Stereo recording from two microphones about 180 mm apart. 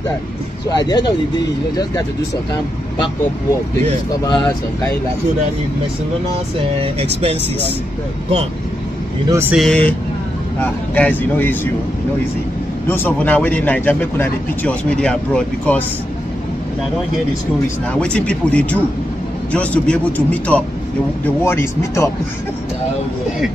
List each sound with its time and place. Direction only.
0.7 s speech: 25° left (ahead or behind)
4.2 s speech: 20° left (ahead or behind)
6.8 s speech: 35° right (ahead or behind)
9.3 s speech: 10° right (ahead or behind)
9.6 s speech: 5° left (ahead or behind)
12.8 s speech: 10° left (ahead or behind)
18.0 s speech: 5° left (ahead or behind)